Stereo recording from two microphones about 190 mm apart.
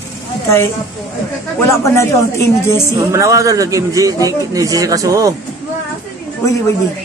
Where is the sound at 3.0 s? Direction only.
15° right (ahead or behind).